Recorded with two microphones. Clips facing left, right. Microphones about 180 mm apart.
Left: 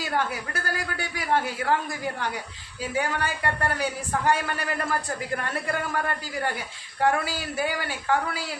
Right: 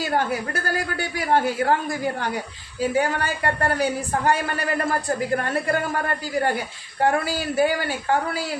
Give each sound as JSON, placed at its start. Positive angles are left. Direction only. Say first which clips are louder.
{"t": 0.0, "sound": "a man's voice", "louder": "right 5 dB", "side_deg": -40}